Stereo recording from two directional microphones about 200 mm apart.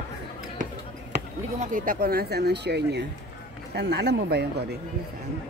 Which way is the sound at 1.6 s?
45° right (ahead or behind).